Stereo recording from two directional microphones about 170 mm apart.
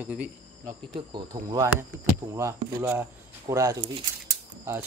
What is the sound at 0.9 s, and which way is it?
Speech, 30° right (ahead or behind).